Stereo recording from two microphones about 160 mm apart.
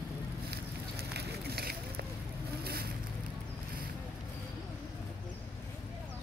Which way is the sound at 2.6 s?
75° right (ahead or behind).